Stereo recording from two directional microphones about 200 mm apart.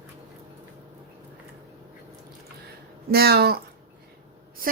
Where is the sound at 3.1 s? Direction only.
50° right (ahead or behind).